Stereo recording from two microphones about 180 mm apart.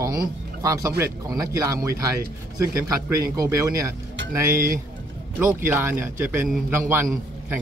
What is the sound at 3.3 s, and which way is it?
A man's voice, 20° right (ahead or behind).